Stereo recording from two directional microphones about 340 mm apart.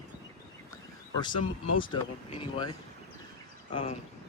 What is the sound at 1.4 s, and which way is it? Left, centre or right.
Speech, left.